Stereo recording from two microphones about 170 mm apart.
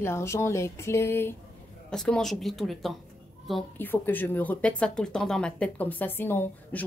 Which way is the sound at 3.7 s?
10° left (ahead or behind).